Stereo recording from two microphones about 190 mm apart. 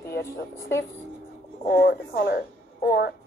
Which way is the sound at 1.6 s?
60° left (ahead or behind).